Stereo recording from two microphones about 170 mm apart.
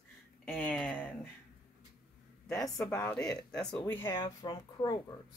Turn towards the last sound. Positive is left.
turn(degrees=25)  # may be behind; listen again after turning